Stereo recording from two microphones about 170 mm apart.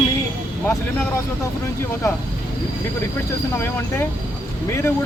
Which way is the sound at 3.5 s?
10° left (ahead or behind).